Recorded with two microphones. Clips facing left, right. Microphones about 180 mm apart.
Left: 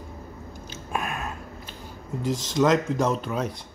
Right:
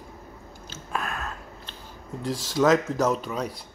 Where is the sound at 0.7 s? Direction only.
15° left (ahead or behind).